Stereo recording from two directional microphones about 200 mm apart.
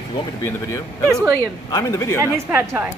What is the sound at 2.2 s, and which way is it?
Speech, 15° right (ahead or behind).